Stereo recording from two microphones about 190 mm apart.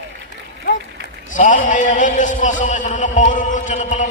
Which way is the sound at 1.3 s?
45° left (ahead or behind).